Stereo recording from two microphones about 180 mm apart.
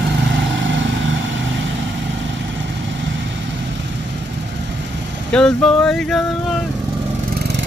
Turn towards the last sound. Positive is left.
turn(degrees=5)  # may be behind; listen again after turning